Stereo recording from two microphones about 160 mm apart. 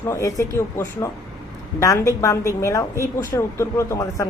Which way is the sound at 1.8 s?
20° left (ahead or behind).